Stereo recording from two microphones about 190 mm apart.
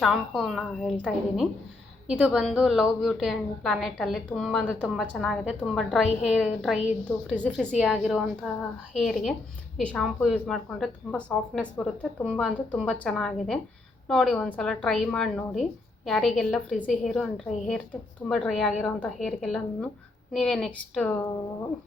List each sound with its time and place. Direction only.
0.0 s a woman's voice: centre (ahead or behind)